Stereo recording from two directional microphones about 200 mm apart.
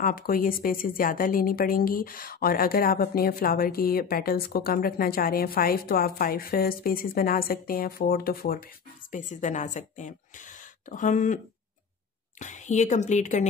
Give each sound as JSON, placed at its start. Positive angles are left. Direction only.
{"t": 0.0, "sound": "a woman's voice", "side_deg": 45}
{"t": 12.4, "sound": "a woman's voice", "side_deg": 35}